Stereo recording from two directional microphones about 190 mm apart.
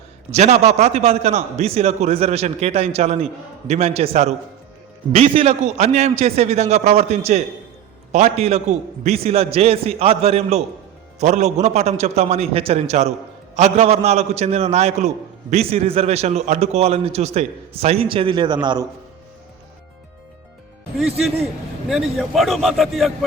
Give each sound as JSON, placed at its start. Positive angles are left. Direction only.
{"t": 0.3, "sound": "a man's voice", "side_deg": -35}
{"t": 21.8, "sound": "a man's voice", "side_deg": 0}